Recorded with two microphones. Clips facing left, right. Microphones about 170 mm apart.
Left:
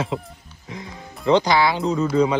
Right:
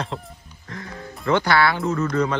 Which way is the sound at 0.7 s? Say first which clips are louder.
Even; 15° left (ahead or behind).